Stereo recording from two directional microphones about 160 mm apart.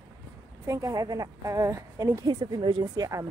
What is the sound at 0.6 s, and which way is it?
A woman's voice, 20° right (ahead or behind).